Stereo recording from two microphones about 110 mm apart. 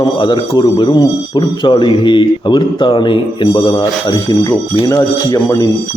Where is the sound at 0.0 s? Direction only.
45° left (ahead or behind).